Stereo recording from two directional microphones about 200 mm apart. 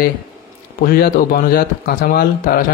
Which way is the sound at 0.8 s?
50° left (ahead or behind).